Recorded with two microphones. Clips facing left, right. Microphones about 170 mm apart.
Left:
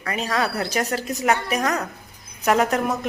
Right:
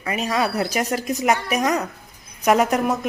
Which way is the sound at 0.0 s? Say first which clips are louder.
Right 2 dB; 15° right (ahead or behind).